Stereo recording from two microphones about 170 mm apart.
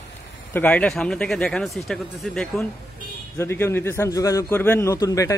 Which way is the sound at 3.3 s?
15° left (ahead or behind).